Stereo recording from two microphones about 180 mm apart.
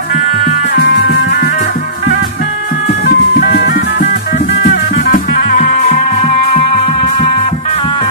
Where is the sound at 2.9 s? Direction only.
65° left (ahead or behind).